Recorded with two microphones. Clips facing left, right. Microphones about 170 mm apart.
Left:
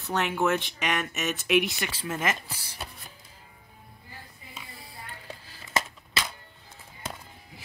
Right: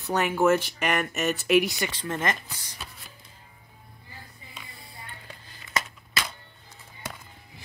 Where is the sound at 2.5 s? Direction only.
30° left (ahead or behind).